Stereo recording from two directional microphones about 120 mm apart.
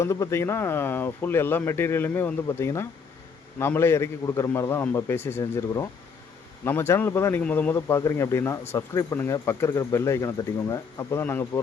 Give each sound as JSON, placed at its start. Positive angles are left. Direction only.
{"t": 0.0, "sound": "speech", "side_deg": 25}